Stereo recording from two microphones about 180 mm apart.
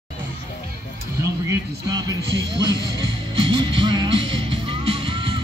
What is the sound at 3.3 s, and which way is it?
Music, 25° right (ahead or behind).